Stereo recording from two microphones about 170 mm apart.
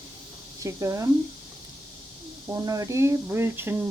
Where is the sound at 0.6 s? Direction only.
20° right (ahead or behind).